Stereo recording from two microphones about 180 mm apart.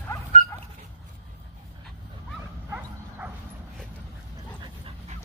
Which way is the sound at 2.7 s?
10° right (ahead or behind).